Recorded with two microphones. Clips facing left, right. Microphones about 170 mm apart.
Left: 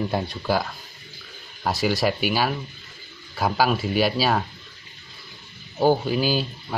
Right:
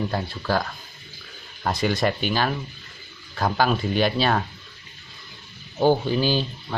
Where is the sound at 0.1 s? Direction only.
15° left (ahead or behind).